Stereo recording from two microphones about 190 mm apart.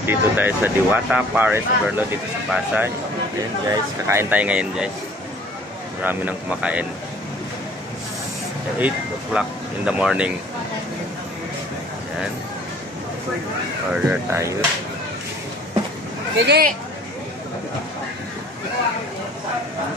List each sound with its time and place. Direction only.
0.0 s speech: 10° right (ahead or behind)
6.0 s speech: 10° right (ahead or behind)
8.7 s speech: 5° right (ahead or behind)
13.9 s speech: 15° right (ahead or behind)
16.3 s speech: 60° right (ahead or behind)